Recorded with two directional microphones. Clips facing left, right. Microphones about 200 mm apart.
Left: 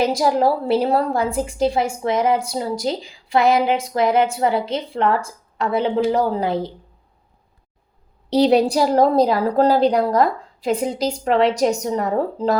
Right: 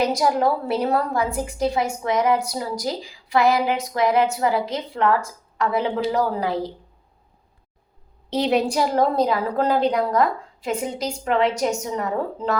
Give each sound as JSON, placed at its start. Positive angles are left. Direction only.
{"t": 0.0, "sound": "a woman's voice", "side_deg": 30}
{"t": 8.3, "sound": "a woman's voice", "side_deg": 35}